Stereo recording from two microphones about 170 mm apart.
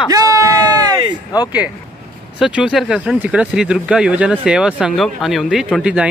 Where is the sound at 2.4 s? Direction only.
5° right (ahead or behind).